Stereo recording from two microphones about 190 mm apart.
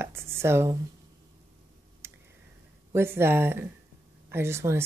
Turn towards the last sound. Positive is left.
turn(degrees=-15)  # may be behind; listen again after turning